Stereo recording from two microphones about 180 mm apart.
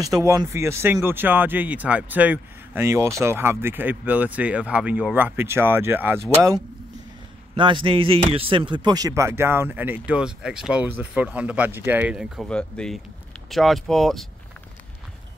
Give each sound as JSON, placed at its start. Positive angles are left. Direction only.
{"t": 0.0, "sound": "speech", "side_deg": -20}
{"t": 7.5, "sound": "speech", "side_deg": -30}